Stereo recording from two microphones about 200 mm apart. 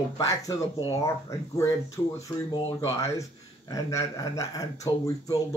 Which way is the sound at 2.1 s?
15° left (ahead or behind).